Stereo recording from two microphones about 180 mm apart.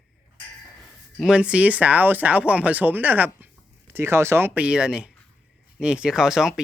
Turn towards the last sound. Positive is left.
turn(degrees=-5)  # may be behind; listen again after turning